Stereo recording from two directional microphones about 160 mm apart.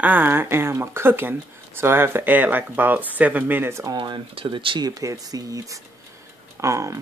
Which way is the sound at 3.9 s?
30° right (ahead or behind).